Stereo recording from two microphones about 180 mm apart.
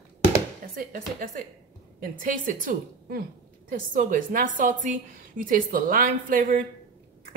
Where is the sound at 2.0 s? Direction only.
50° right (ahead or behind).